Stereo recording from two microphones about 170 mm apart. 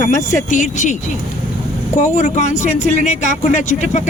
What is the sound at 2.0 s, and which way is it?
Speech, 45° left (ahead or behind).